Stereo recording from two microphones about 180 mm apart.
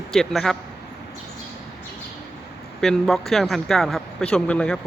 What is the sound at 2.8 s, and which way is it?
Speech, centre (ahead or behind).